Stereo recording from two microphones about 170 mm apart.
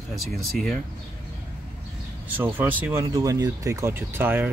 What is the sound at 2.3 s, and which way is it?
Speech, 10° right (ahead or behind).